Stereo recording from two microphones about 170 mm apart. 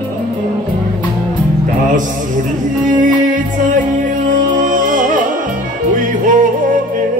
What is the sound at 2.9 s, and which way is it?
Music, 50° right (ahead or behind).